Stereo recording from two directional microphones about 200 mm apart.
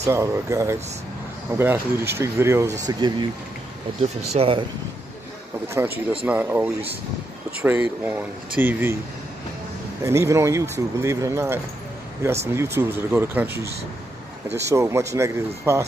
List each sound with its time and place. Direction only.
0.0 s speech: 15° right (ahead or behind)
6.2 s speech: 10° right (ahead or behind)
10.0 s speech: 15° right (ahead or behind)